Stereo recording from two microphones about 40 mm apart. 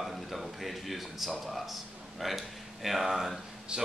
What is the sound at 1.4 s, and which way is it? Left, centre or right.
Speech, centre.